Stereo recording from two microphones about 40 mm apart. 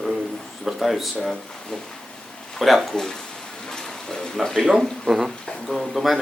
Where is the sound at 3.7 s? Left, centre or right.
Centre.